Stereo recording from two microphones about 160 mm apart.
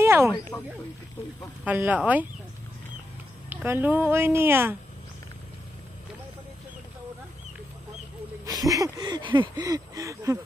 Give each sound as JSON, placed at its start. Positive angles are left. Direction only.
{"t": 0.0, "sound": "a sound", "side_deg": -15}
{"t": 0.5, "sound": "speech", "side_deg": 15}
{"t": 1.6, "sound": "speech", "side_deg": -10}
{"t": 3.4, "sound": "speech", "side_deg": -10}
{"t": 8.5, "sound": "speech", "side_deg": -20}